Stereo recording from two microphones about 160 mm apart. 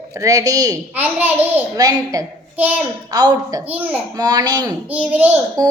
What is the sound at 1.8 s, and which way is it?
Speech, 20° right (ahead or behind).